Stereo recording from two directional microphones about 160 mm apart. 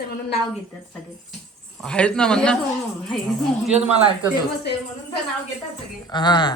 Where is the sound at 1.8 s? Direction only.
5° left (ahead or behind).